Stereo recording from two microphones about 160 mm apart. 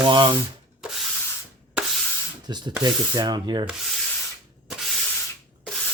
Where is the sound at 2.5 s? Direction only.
25° right (ahead or behind).